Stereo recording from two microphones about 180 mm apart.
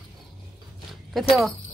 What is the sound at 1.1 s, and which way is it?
Speech, centre (ahead or behind).